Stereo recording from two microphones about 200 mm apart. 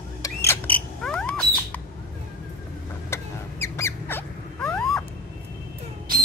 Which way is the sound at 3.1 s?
15° left (ahead or behind).